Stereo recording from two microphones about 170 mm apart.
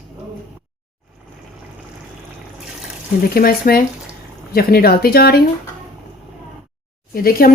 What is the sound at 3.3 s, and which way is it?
Speech, 60° left (ahead or behind).